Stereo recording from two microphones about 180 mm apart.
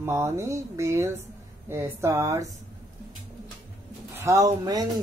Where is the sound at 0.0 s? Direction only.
15° right (ahead or behind).